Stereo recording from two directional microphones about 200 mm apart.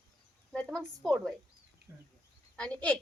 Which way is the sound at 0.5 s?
5° left (ahead or behind).